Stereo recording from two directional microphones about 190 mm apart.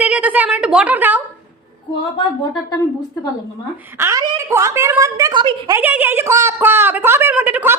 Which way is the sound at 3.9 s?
15° right (ahead or behind).